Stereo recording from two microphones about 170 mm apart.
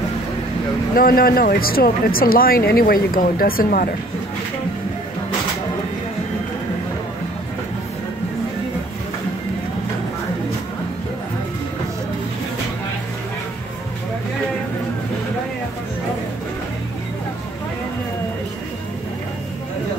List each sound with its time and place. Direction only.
0.9 s speech: 60° left (ahead or behind)